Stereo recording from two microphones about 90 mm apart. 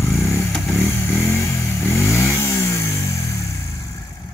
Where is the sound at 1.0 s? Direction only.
30° left (ahead or behind).